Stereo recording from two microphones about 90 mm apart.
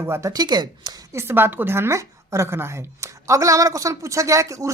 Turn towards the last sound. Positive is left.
turn(degrees=-35)  # may be behind; listen again after turning